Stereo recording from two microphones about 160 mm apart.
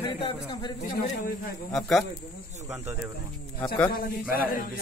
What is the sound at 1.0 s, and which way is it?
Speech, 65° left (ahead or behind).